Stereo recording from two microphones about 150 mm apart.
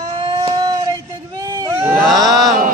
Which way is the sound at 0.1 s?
30° right (ahead or behind).